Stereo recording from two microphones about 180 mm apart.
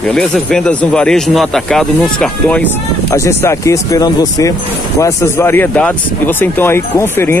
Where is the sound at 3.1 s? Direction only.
15° left (ahead or behind).